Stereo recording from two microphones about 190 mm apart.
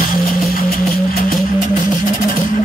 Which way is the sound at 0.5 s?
50° left (ahead or behind).